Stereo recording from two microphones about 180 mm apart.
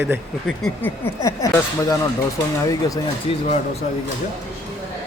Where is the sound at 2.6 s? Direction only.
20° left (ahead or behind).